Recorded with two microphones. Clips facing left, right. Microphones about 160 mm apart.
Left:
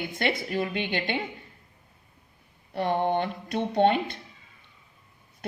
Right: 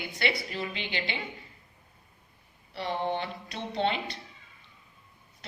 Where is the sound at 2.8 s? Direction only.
55° left (ahead or behind).